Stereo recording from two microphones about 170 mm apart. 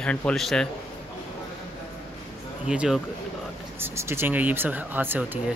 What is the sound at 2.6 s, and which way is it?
Speech, 5° right (ahead or behind).